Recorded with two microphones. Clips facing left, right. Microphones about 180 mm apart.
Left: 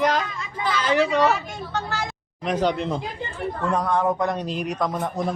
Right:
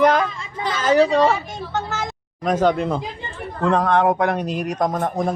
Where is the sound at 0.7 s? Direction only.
45° right (ahead or behind).